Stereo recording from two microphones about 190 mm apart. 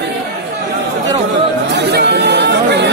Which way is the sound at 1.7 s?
60° right (ahead or behind).